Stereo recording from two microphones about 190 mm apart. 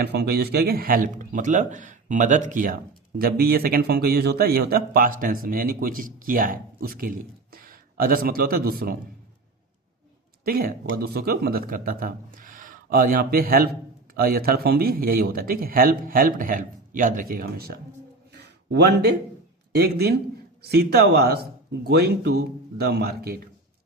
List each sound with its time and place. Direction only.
0.0 s speech: 55° right (ahead or behind)
10.4 s speech: 50° right (ahead or behind)
18.3 s a sound: 60° right (ahead or behind)
19.7 s speech: 55° right (ahead or behind)